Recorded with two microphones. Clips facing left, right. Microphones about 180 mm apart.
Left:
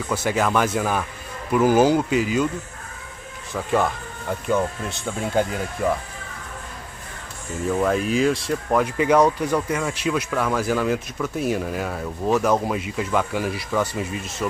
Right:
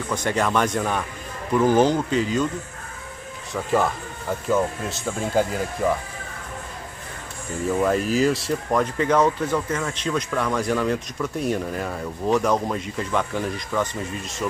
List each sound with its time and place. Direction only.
0.1 s speech: 5° left (ahead or behind)
3.7 s speech: centre (ahead or behind)
7.6 s speech: centre (ahead or behind)